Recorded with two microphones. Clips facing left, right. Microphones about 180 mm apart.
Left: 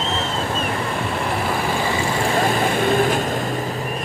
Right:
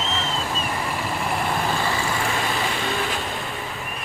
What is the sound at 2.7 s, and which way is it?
Vehicle, 50° left (ahead or behind).